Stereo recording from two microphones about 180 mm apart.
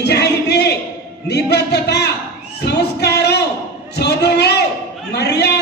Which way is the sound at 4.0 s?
65° left (ahead or behind).